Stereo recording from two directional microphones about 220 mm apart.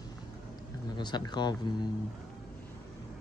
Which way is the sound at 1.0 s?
20° left (ahead or behind).